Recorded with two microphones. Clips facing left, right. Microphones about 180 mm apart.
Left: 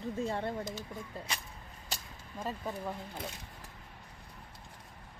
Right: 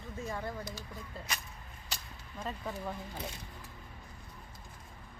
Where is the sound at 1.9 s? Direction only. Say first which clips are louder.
Left 2 dB; 45° left (ahead or behind).